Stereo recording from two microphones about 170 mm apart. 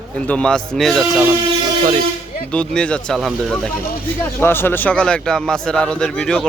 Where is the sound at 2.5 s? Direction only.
5° left (ahead or behind).